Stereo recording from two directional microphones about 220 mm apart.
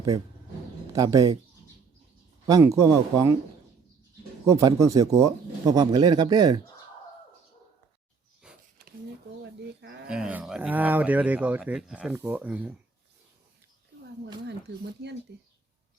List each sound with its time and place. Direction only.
0.9 s speech: 15° right (ahead or behind)
2.5 s speech: 15° right (ahead or behind)
4.4 s speech: 15° right (ahead or behind)
8.4 s a sound: 5° right (ahead or behind)
9.4 s a sound: 50° right (ahead or behind)
10.1 s speech: 5° right (ahead or behind)
15.0 s speech: 50° right (ahead or behind)